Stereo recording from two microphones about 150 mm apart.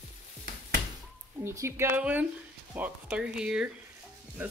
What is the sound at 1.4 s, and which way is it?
Speech, 15° right (ahead or behind).